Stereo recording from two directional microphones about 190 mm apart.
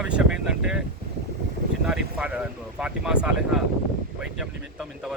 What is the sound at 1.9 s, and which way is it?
Speech, 5° right (ahead or behind).